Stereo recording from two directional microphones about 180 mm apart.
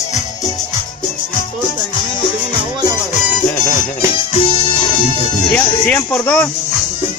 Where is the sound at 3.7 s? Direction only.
35° left (ahead or behind).